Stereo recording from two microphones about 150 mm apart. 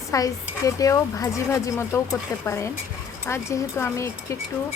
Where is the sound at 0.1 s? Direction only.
20° left (ahead or behind).